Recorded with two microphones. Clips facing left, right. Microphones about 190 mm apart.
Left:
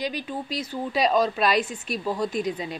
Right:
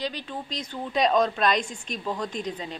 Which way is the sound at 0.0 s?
10° left (ahead or behind).